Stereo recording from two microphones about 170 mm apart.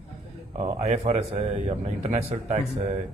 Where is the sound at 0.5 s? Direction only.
35° right (ahead or behind).